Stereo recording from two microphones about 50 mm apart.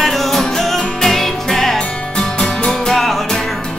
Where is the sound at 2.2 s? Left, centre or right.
Centre.